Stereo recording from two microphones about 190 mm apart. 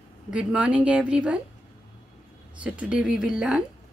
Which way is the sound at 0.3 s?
5° right (ahead or behind).